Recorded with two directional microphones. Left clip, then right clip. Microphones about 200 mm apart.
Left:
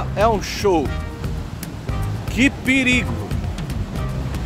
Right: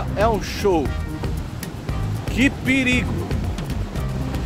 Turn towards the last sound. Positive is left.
turn(degrees=5)  # may be behind; listen again after turning